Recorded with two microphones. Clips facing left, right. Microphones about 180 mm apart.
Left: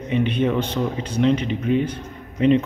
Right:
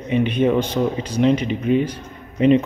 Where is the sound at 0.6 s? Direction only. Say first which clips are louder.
Right 3 dB; 35° right (ahead or behind).